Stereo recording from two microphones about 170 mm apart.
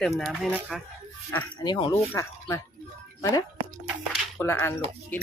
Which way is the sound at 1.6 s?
25° left (ahead or behind).